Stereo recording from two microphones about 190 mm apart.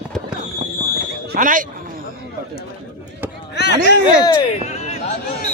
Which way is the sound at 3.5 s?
60° left (ahead or behind).